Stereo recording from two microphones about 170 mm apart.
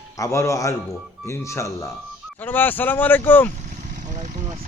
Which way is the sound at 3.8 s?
50° right (ahead or behind).